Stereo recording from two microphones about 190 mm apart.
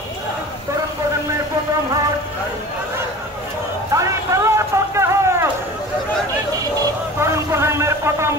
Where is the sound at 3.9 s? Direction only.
15° right (ahead or behind).